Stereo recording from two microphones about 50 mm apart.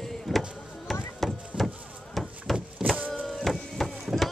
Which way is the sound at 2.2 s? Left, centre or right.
Centre.